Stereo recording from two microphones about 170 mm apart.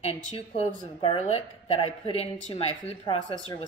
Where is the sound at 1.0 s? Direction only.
35° left (ahead or behind).